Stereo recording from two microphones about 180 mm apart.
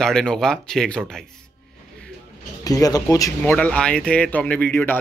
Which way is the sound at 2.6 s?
20° left (ahead or behind).